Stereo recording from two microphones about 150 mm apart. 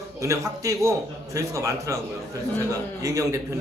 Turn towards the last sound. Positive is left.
turn(degrees=-20)  # may be behind; listen again after turning